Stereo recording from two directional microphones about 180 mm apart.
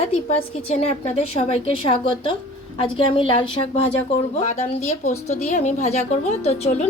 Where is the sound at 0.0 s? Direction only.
35° left (ahead or behind).